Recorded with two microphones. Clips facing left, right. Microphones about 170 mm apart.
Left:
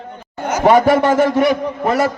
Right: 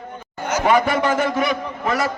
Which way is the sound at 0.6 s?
40° left (ahead or behind).